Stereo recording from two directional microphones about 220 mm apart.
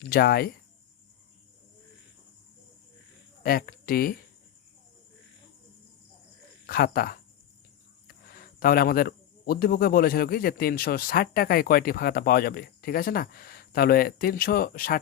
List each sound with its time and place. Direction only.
0.1 s speech: 45° left (ahead or behind)
3.4 s speech: 40° left (ahead or behind)
6.7 s speech: 45° left (ahead or behind)